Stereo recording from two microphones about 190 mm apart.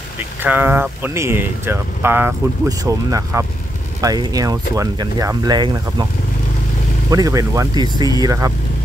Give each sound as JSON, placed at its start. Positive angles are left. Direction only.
{"t": 0.4, "sound": "speech", "side_deg": -10}
{"t": 7.1, "sound": "speech", "side_deg": -20}